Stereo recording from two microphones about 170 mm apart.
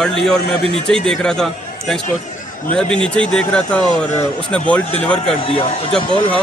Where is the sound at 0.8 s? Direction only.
5° left (ahead or behind).